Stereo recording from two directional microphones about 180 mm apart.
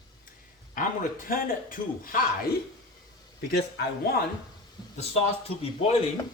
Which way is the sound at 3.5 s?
65° left (ahead or behind).